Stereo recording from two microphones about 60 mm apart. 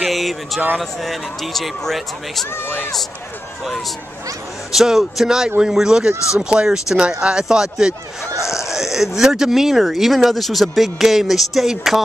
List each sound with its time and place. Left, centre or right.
0.1 s speech: centre
4.7 s speech: centre